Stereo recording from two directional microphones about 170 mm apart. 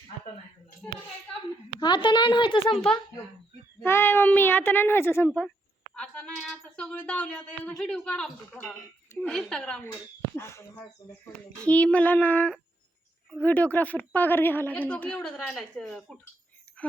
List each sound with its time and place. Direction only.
1.8 s speech: 25° left (ahead or behind)
3.8 s speech: 15° left (ahead or behind)
5.9 s a sound: 5° left (ahead or behind)
6.7 s a woman's voice: 5° left (ahead or behind)
10.8 s speech: 5° left (ahead or behind)